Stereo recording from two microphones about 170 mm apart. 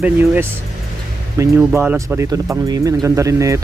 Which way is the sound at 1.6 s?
10° right (ahead or behind).